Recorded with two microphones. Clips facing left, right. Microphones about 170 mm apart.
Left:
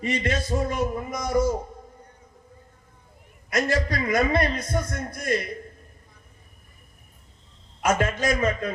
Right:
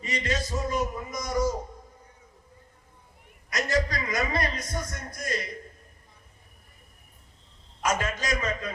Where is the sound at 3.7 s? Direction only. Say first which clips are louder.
Left 3 dB; 30° left (ahead or behind).